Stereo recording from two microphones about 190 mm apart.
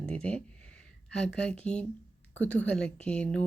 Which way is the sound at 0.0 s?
5° left (ahead or behind).